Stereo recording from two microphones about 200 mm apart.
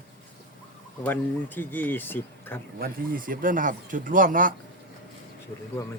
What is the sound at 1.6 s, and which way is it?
Speech, 10° left (ahead or behind).